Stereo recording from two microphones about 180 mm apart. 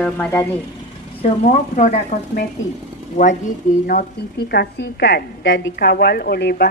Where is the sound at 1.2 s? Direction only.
40° left (ahead or behind).